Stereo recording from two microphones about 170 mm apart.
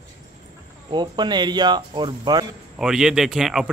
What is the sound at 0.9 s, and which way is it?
Speech, 25° right (ahead or behind).